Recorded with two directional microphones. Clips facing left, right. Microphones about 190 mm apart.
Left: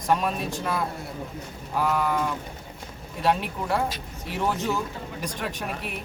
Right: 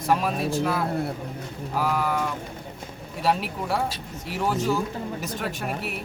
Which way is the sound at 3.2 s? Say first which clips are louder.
Even; 5° right (ahead or behind).